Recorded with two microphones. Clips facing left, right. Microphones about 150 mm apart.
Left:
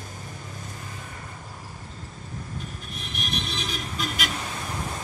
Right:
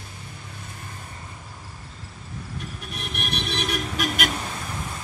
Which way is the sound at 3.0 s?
65° right (ahead or behind).